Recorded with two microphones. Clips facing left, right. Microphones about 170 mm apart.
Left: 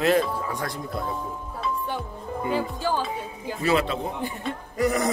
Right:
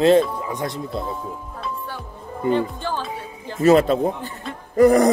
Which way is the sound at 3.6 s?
45° right (ahead or behind).